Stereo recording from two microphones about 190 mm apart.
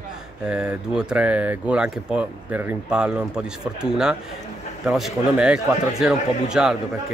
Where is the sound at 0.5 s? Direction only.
5° right (ahead or behind).